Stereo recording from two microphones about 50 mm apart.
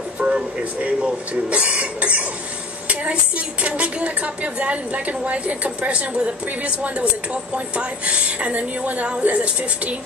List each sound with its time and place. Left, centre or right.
0.2 s a woman's voice: right